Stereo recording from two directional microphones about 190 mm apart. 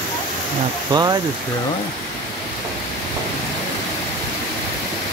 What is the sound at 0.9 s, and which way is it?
Speech, 20° right (ahead or behind).